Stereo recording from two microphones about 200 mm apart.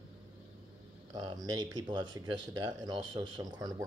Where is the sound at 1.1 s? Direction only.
20° right (ahead or behind).